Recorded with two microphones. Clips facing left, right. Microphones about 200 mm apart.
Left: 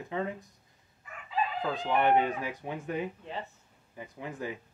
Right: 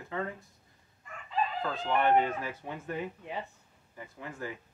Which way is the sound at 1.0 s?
5° left (ahead or behind).